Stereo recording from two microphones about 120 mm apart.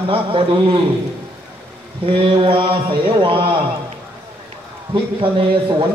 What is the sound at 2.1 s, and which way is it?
Speech, 50° right (ahead or behind).